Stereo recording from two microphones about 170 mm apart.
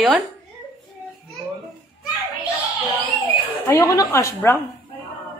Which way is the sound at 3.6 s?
20° left (ahead or behind).